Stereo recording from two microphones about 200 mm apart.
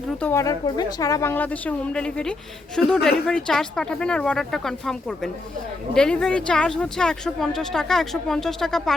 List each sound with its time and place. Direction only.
0.2 s speech: 10° left (ahead or behind)